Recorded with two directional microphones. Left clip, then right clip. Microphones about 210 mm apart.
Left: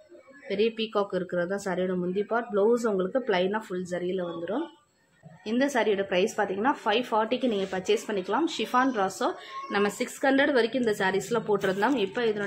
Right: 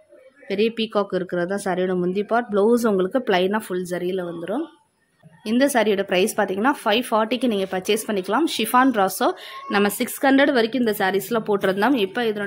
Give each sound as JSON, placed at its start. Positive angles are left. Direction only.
{"t": 0.5, "sound": "a woman's voice", "side_deg": -50}